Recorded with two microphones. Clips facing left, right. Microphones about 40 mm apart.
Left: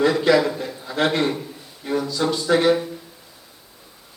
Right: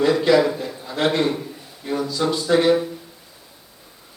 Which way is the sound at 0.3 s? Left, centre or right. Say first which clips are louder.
Right 2 dB; centre.